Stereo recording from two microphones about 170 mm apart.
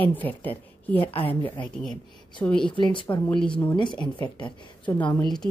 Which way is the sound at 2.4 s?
15° left (ahead or behind).